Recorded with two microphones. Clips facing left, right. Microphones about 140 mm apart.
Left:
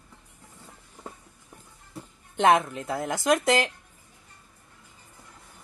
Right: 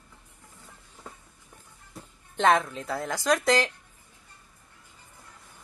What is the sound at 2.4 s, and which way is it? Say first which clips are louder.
Speech: left 2 dB; 20° left (ahead or behind).